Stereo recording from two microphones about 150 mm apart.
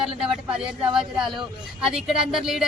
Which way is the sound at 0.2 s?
5° right (ahead or behind).